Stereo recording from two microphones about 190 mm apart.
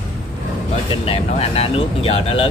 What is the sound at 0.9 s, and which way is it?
Speech, 30° left (ahead or behind).